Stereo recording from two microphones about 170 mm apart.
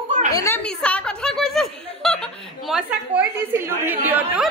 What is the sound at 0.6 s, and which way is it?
A woman's voice, 5° left (ahead or behind).